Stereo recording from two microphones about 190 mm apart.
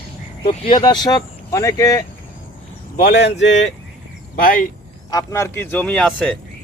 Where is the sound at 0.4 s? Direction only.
30° left (ahead or behind).